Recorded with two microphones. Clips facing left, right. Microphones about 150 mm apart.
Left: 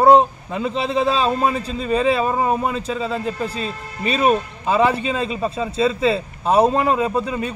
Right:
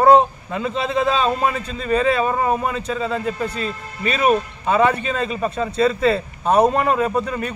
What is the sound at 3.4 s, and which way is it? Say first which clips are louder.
Speech: right 1 dB; 30° left (ahead or behind).